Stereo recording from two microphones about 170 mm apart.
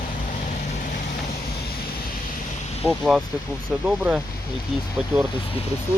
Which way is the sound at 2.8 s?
5° right (ahead or behind).